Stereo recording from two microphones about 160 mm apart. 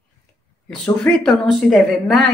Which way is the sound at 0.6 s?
5° left (ahead or behind).